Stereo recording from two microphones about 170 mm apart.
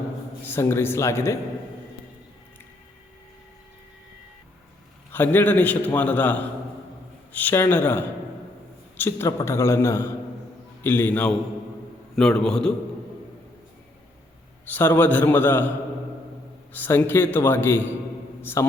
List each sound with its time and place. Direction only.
0.4 s a man's voice: 15° left (ahead or behind)
5.1 s a man's voice: 10° left (ahead or behind)
14.7 s a man's voice: 10° left (ahead or behind)
16.7 s a man's voice: 10° left (ahead or behind)